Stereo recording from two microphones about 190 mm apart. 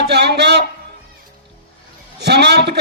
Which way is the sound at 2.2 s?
60° right (ahead or behind).